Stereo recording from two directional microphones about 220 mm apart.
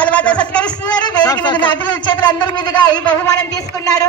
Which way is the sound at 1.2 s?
20° left (ahead or behind).